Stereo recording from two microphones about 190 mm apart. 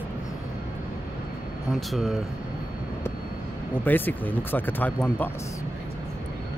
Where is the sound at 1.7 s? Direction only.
Centre (ahead or behind).